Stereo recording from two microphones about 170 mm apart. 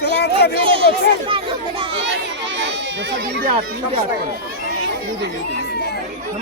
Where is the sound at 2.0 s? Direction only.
90° right.